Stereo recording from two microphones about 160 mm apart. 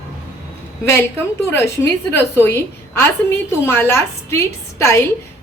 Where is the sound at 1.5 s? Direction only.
15° left (ahead or behind).